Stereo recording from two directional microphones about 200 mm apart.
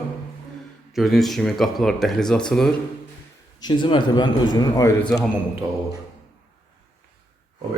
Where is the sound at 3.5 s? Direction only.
20° left (ahead or behind).